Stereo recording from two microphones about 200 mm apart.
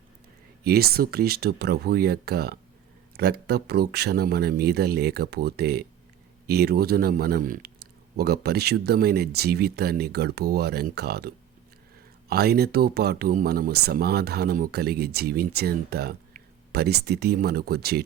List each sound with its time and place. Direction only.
0.6 s speech: 50° right (ahead or behind)